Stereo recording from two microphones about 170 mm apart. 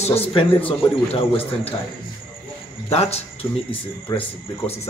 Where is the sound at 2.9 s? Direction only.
40° left (ahead or behind).